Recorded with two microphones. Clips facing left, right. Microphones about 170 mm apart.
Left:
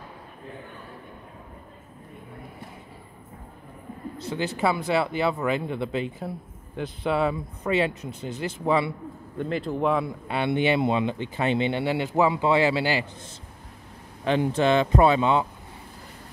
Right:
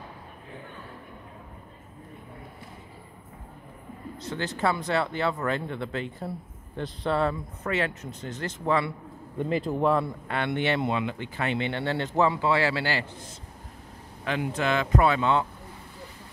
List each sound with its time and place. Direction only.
4.2 s speech: 10° left (ahead or behind)
9.7 s speech: centre (ahead or behind)
10.2 s speech: 15° left (ahead or behind)
14.2 s speech: 30° left (ahead or behind)